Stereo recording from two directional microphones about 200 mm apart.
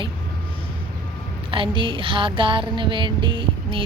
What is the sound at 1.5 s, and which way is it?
Music, 25° right (ahead or behind).